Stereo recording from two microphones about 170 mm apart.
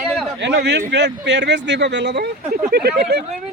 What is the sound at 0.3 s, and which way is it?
Speech, 85° right.